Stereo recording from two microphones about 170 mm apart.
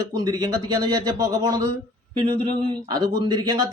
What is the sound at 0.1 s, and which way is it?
Speech, 25° right (ahead or behind).